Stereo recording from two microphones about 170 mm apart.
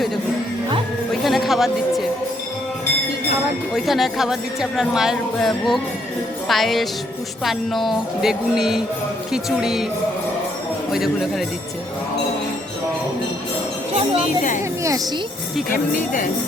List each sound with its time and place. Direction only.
1.2 s a sound: centre (ahead or behind)
3.8 s speech: centre (ahead or behind)
10.9 s speech: centre (ahead or behind)
15.7 s speech: 55° left (ahead or behind)